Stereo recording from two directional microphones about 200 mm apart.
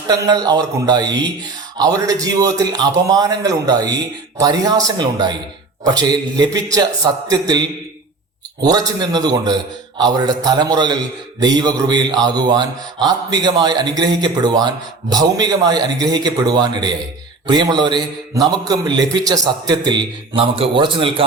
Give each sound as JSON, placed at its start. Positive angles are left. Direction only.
{"t": 0.1, "sound": "a man's voice", "side_deg": -20}
{"t": 8.6, "sound": "a man's voice", "side_deg": -20}